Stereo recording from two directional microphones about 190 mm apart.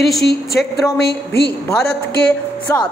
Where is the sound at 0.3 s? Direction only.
55° left (ahead or behind).